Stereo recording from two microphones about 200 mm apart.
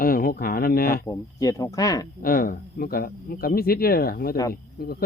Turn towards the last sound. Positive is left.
turn(degrees=50)  # may be behind; listen again after turning